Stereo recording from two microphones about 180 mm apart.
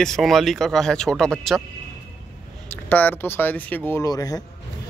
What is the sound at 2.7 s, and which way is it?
A man's voice, 10° left (ahead or behind).